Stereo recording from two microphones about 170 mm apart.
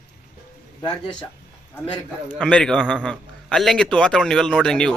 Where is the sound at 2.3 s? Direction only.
5° left (ahead or behind).